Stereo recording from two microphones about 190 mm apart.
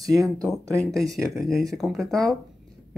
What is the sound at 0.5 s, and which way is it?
Speech, 5° left (ahead or behind).